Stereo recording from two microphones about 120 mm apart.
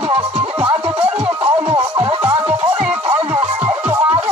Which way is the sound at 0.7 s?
50° right (ahead or behind).